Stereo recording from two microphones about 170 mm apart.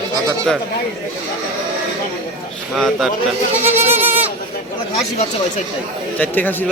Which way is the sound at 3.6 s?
10° right (ahead or behind).